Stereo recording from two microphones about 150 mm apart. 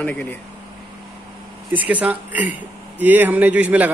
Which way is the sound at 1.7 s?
10° right (ahead or behind).